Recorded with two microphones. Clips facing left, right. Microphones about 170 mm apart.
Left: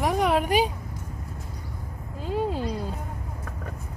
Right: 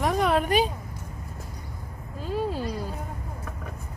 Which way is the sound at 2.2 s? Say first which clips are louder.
Left 1 dB; 20° left (ahead or behind).